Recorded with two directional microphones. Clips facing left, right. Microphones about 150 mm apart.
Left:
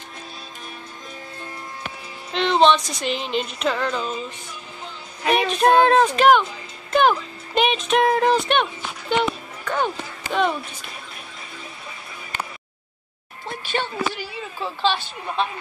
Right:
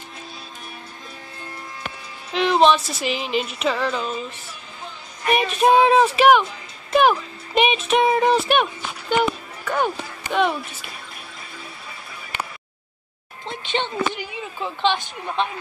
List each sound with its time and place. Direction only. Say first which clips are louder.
2.3 s music: right 1 dB; 5° right (ahead or behind)
5.3 s music: even; 5° right (ahead or behind)
6.9 s speech: right 1 dB; 5° right (ahead or behind)
9.7 s speech: right 1 dB; 5° right (ahead or behind)
13.5 s speech: right 1 dB; 20° right (ahead or behind)